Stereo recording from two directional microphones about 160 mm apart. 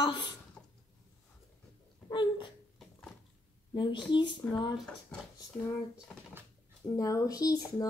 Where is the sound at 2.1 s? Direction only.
30° left (ahead or behind).